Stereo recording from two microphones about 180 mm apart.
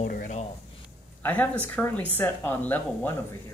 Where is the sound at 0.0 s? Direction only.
45° left (ahead or behind).